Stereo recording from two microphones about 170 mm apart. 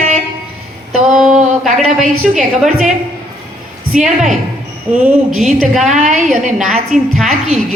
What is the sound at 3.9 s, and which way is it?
A woman's voice, 5° right (ahead or behind).